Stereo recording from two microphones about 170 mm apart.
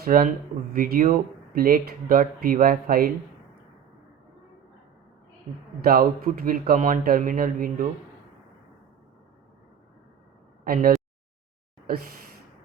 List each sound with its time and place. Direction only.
0.0 s speech: 55° right (ahead or behind)
5.8 s speech: 60° right (ahead or behind)
10.6 s speech: 60° right (ahead or behind)